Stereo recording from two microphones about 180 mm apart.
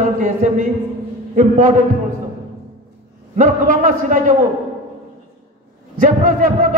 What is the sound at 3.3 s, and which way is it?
A man's voice, 45° right (ahead or behind).